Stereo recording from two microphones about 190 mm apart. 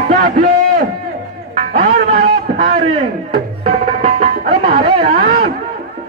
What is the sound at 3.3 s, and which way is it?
Tabla, 50° right (ahead or behind).